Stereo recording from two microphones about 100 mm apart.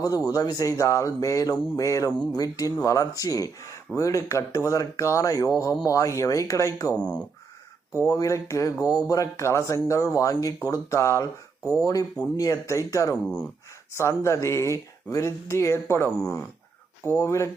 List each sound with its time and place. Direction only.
0.3 s speech: 40° left (ahead or behind)
6.9 s speech: 10° left (ahead or behind)
8.0 s speech: 35° left (ahead or behind)
13.2 s speech: 10° left (ahead or behind)
13.9 s speech: 30° left (ahead or behind)